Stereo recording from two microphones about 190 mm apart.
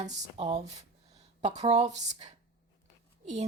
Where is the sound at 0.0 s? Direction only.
35° right (ahead or behind).